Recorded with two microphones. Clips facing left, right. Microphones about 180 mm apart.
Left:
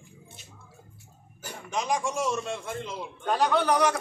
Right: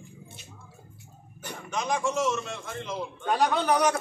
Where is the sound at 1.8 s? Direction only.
10° left (ahead or behind).